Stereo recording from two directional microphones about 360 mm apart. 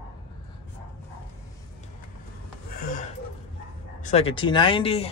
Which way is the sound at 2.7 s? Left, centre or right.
Left.